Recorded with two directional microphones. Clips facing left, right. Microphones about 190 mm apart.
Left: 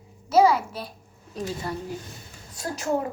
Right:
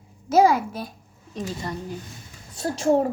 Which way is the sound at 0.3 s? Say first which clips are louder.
Right 1 dB; 50° right (ahead or behind).